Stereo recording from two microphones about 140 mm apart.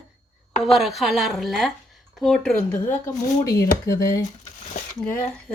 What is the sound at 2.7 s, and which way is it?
Speech, 20° left (ahead or behind).